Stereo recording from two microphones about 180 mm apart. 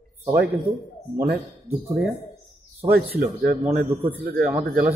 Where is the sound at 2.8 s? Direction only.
60° right (ahead or behind).